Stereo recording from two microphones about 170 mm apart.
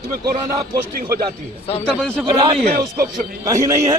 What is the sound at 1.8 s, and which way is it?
Speech, 5° left (ahead or behind).